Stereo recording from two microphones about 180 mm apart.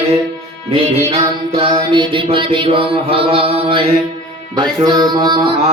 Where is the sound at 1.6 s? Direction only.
25° right (ahead or behind).